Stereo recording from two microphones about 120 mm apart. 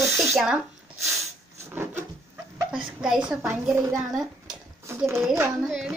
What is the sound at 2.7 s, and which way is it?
Speech, 5° right (ahead or behind).